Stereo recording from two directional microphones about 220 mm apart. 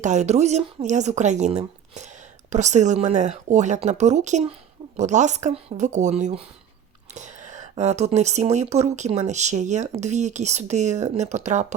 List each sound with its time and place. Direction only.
0.0 s speech: 30° right (ahead or behind)